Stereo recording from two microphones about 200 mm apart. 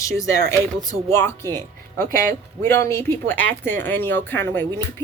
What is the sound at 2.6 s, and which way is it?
Speech, 15° left (ahead or behind).